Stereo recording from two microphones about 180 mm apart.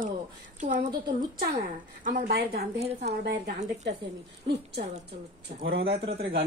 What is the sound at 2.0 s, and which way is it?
Speech, 60° right (ahead or behind).